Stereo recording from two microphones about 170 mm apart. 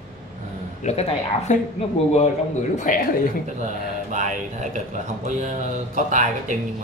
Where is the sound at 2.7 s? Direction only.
50° left (ahead or behind).